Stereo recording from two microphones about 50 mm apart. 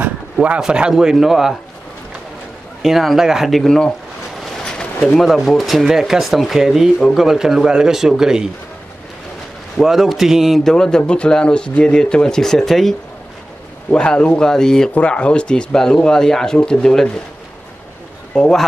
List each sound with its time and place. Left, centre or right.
0.6 s speech: centre
2.8 s a man's voice: centre
3.5 s speech: centre
4.6 s a sound: centre
5.2 s a man's voice: centre
9.8 s a man's voice: centre
10.6 s speech: centre
13.8 s speech: centre
15.0 s speech: left